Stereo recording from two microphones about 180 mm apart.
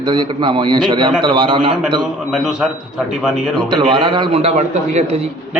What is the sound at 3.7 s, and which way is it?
A man's voice, 25° right (ahead or behind).